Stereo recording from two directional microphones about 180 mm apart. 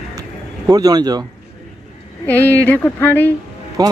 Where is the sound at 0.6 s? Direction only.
20° right (ahead or behind).